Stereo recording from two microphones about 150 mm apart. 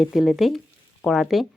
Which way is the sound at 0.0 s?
Centre (ahead or behind).